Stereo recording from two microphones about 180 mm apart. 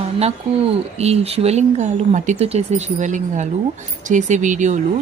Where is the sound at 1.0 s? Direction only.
35° right (ahead or behind).